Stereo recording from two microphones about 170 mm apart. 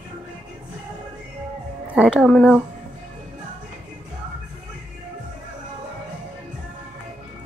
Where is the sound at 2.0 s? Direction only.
5° right (ahead or behind).